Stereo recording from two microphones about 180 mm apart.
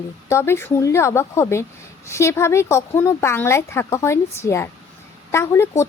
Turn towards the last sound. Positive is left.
turn(degrees=15)  # may be behind; listen again after turning